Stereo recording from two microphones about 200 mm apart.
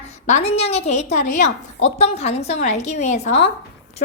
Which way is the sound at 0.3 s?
35° left (ahead or behind).